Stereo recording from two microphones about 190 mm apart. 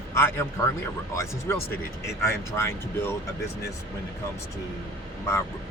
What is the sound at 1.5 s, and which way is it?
Speech, 15° left (ahead or behind).